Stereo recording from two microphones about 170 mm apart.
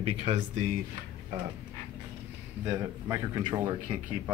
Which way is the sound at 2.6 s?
15° right (ahead or behind).